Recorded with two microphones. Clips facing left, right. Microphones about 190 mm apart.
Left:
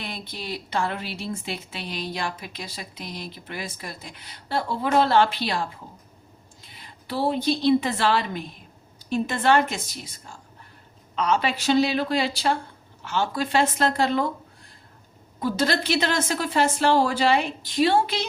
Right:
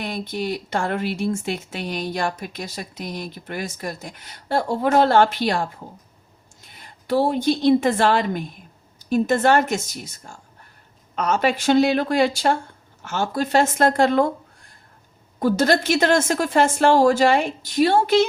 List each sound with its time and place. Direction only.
0.0 s a woman's voice: 45° right (ahead or behind)
15.4 s speech: 45° right (ahead or behind)